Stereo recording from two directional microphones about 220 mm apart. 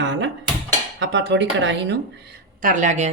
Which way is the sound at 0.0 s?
55° right (ahead or behind).